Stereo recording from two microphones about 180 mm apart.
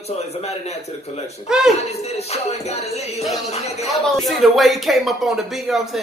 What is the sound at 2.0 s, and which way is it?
A man's voice, 35° left (ahead or behind).